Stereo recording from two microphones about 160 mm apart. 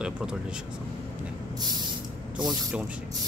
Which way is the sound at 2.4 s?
5° right (ahead or behind).